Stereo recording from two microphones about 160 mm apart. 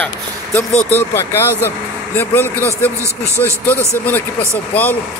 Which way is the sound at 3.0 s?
15° right (ahead or behind).